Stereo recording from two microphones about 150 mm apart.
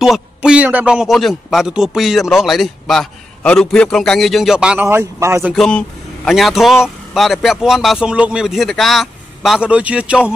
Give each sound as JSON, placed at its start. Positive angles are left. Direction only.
{"t": 0.0, "sound": "a man's voice", "side_deg": -5}
{"t": 4.8, "sound": "speech", "side_deg": -15}
{"t": 5.5, "sound": "a man's voice", "side_deg": 5}